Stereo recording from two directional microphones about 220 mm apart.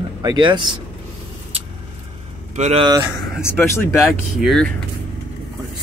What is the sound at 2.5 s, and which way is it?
Speech, 30° right (ahead or behind).